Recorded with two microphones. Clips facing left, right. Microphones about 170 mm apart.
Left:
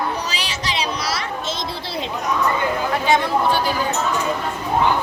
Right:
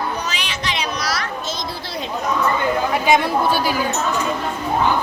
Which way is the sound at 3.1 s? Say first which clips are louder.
Right 1 dB; 10° right (ahead or behind).